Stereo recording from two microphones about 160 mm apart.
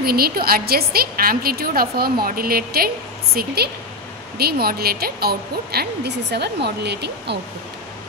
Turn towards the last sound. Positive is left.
turn(degrees=-90)